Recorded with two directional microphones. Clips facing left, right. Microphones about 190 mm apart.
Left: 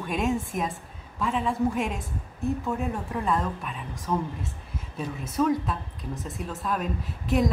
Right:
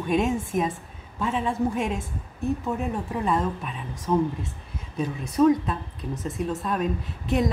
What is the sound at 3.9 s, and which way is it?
A woman's voice, centre (ahead or behind).